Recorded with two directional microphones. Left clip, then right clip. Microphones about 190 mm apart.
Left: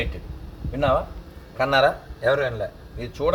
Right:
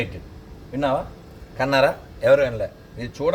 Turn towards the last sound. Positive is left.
turn(degrees=5)  # may be behind; listen again after turning